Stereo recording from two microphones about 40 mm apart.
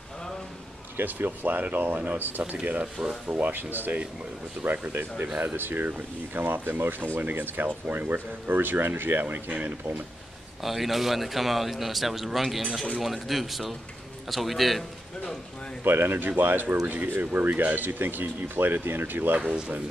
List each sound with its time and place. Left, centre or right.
0.9 s speech: right
5.6 s speech: right
9.5 s speech: right
10.6 s a man's voice: centre
15.8 s speech: right